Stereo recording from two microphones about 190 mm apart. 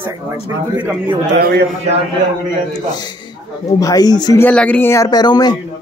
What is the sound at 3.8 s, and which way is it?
Speech, 20° left (ahead or behind).